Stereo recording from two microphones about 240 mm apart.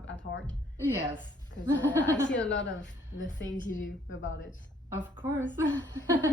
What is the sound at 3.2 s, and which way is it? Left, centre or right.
Speech, left.